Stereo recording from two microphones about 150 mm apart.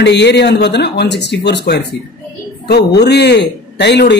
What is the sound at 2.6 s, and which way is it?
A man's voice, 90° left.